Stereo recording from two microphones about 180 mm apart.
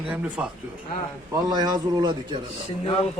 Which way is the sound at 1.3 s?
20° right (ahead or behind).